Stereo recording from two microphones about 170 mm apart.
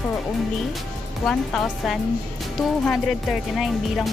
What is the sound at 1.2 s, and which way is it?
Speech, centre (ahead or behind).